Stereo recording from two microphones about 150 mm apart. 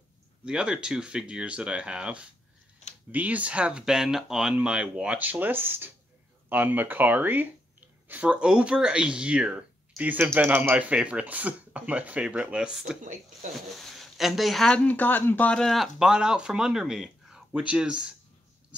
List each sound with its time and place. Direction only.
0.5 s speech: 5° right (ahead or behind)
13.0 s speech: 55° right (ahead or behind)
13.7 s speech: centre (ahead or behind)